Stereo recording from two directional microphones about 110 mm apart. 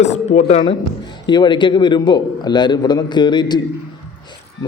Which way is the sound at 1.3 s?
45° left (ahead or behind).